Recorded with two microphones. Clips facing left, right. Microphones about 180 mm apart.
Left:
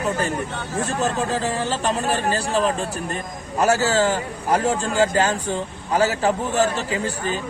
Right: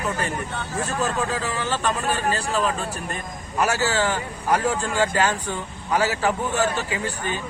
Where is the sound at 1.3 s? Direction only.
30° left (ahead or behind).